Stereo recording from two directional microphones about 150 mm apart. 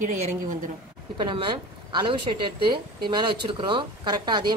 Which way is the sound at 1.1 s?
35° right (ahead or behind).